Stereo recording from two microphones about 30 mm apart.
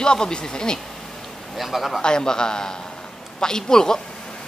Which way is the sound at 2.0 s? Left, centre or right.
Left.